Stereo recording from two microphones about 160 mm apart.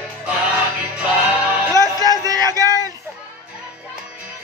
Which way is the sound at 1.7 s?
20° right (ahead or behind).